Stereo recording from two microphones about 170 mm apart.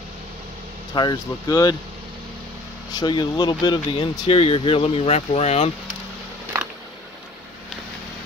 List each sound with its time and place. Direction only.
0.9 s speech: 25° left (ahead or behind)
2.9 s speech: 25° left (ahead or behind)